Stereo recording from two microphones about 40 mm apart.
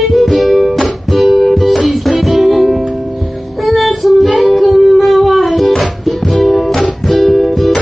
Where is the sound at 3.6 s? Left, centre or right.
Centre.